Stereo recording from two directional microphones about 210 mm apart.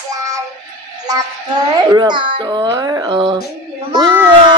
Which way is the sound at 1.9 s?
20° right (ahead or behind).